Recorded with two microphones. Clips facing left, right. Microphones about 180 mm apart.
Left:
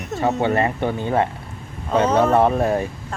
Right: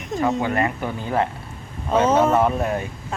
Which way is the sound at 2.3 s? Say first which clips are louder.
Left 3 dB; 30° left (ahead or behind).